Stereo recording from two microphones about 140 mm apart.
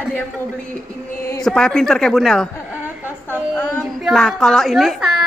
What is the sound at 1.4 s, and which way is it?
A woman's voice, 5° left (ahead or behind).